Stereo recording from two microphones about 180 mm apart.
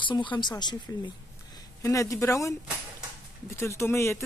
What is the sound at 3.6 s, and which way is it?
Speech, 15° left (ahead or behind).